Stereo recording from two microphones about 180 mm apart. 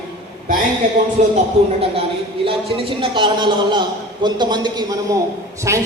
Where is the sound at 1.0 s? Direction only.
45° right (ahead or behind).